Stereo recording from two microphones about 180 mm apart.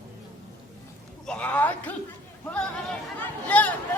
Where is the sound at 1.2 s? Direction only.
5° left (ahead or behind).